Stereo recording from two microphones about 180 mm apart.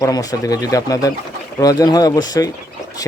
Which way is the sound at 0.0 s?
20° left (ahead or behind).